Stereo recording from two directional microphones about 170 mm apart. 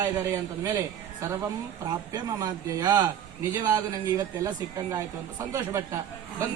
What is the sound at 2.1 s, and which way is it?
Speech, 20° right (ahead or behind).